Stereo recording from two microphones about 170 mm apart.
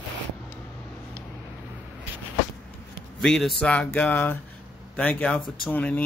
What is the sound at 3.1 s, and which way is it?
A man's voice, centre (ahead or behind).